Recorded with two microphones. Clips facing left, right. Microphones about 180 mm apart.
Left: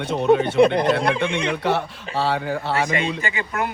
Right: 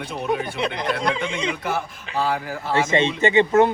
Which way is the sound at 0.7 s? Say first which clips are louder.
Left 7 dB; 55° left (ahead or behind).